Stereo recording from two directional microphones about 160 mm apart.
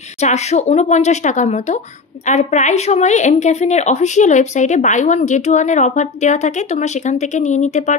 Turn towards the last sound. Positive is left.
turn(degrees=45)  # may be behind; listen again after turning